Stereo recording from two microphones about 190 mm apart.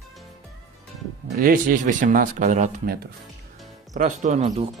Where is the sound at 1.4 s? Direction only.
45° right (ahead or behind).